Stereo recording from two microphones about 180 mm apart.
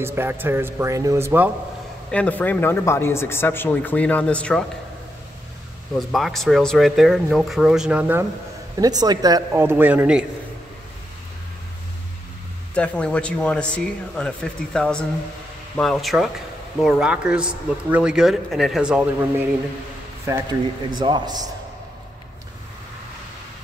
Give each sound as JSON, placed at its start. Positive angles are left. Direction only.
{"t": 0.0, "sound": "a man's voice", "side_deg": -10}
{"t": 2.0, "sound": "speech", "side_deg": 5}
{"t": 5.9, "sound": "speech", "side_deg": 0}
{"t": 8.7, "sound": "a man's voice", "side_deg": -20}
{"t": 12.7, "sound": "speech", "side_deg": 5}
{"t": 20.9, "sound": "speech", "side_deg": -25}